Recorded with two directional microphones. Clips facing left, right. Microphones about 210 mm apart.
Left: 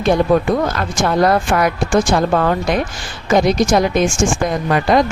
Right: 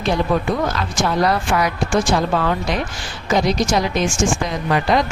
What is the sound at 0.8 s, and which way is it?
Speech, 50° left (ahead or behind).